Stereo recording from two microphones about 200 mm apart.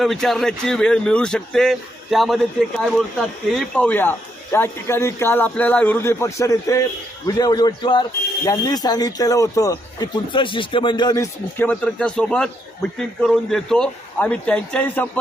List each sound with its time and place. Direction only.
0.0 s a man's voice: centre (ahead or behind)